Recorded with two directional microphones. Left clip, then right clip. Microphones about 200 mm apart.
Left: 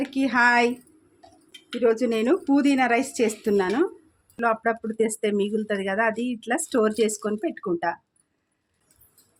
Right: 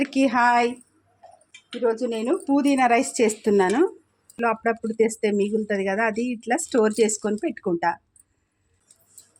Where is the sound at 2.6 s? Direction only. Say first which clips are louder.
Right 5 dB; 5° right (ahead or behind).